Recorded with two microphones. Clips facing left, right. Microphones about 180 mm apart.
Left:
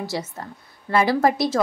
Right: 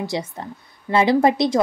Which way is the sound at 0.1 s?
15° right (ahead or behind).